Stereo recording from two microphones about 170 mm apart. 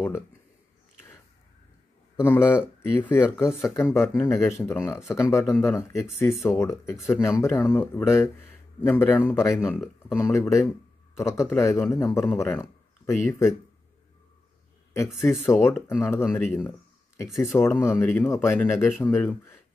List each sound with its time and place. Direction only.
2.1 s speech: 15° left (ahead or behind)
15.4 s speech: 15° left (ahead or behind)